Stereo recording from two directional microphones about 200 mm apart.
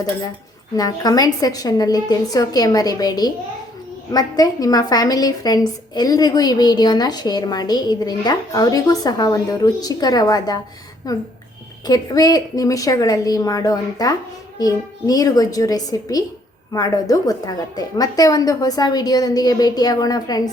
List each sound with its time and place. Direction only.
0.8 s a woman's voice: 20° left (ahead or behind)